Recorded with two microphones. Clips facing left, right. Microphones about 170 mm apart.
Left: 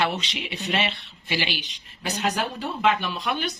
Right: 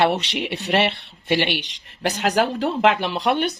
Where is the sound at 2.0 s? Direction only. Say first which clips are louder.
Right 6 dB; 90° right; by 3.5 s 70° right (ahead or behind).